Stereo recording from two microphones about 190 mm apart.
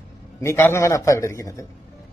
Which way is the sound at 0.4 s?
15° left (ahead or behind).